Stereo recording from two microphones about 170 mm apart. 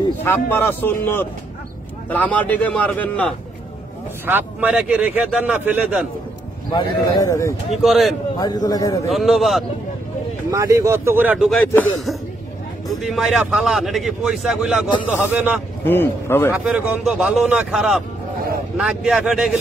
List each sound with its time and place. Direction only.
0.2 s a man's voice: 10° left (ahead or behind)
4.3 s speech: 10° right (ahead or behind)
6.7 s speech: 25° left (ahead or behind)
7.8 s speech: centre (ahead or behind)
8.4 s speech: 20° left (ahead or behind)
9.1 s speech: centre (ahead or behind)
10.5 s speech: 20° right (ahead or behind); by 11.6 s 5° right (ahead or behind)
12.8 s speech: centre (ahead or behind)
15.8 s a man's voice: 15° left (ahead or behind)
16.5 s speech: 5° right (ahead or behind)